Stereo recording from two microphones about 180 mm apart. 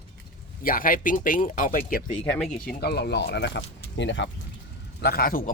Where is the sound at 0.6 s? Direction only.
50° left (ahead or behind).